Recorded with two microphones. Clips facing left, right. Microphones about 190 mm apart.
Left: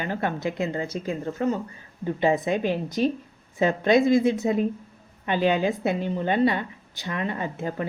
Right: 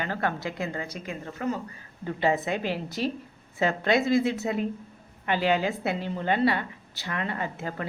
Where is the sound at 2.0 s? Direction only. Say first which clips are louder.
Left 3 dB; 15° left (ahead or behind).